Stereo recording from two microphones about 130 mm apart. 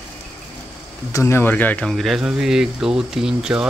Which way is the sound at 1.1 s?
20° left (ahead or behind).